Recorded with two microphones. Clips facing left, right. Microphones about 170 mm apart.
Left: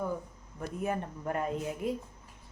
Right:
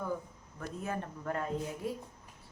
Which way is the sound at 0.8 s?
15° left (ahead or behind).